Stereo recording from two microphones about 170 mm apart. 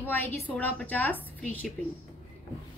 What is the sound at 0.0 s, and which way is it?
A woman's voice, 10° left (ahead or behind).